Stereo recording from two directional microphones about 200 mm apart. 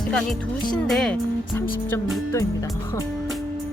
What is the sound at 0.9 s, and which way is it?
Speech, 5° left (ahead or behind).